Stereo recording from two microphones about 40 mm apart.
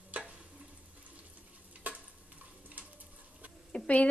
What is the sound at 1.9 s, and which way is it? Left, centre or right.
Stir, right.